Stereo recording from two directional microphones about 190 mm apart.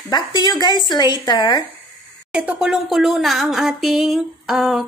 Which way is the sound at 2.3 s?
5° right (ahead or behind).